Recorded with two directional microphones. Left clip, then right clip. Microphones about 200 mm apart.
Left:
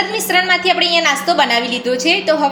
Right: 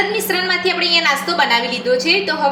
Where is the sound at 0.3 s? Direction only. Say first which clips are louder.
Left 4 dB; 50° left (ahead or behind).